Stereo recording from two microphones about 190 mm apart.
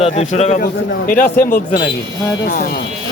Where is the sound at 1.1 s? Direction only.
50° left (ahead or behind).